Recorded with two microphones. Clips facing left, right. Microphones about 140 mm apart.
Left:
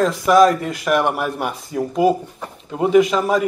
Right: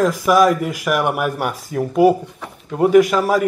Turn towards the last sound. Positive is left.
turn(degrees=-5)  # may be behind; listen again after turning